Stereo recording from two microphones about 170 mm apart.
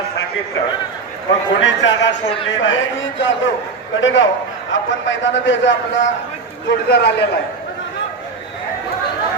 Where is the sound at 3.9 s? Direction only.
90° left.